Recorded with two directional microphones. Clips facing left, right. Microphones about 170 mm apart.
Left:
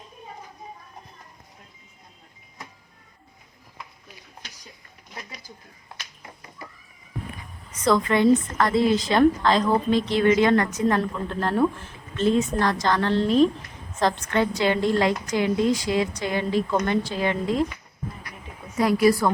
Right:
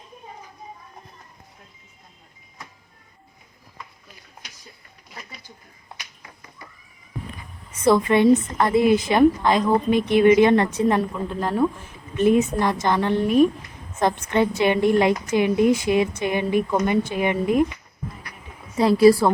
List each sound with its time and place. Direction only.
7.9 s a woman's voice: 25° right (ahead or behind)
11.3 s a woman's voice: 5° right (ahead or behind)
12.1 s a woman's voice: 15° right (ahead or behind)
18.8 s a woman's voice: 30° right (ahead or behind)